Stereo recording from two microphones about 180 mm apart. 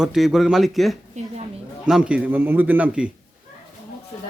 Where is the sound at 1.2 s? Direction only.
40° right (ahead or behind).